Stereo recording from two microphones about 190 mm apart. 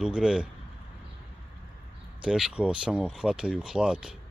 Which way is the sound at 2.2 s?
5° right (ahead or behind).